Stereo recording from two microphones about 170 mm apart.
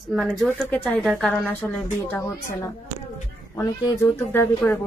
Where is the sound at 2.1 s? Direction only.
20° left (ahead or behind).